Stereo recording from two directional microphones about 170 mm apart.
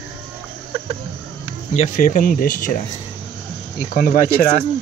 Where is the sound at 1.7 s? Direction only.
45° left (ahead or behind).